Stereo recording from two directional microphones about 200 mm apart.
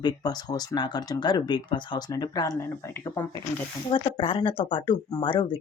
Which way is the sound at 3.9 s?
25° left (ahead or behind).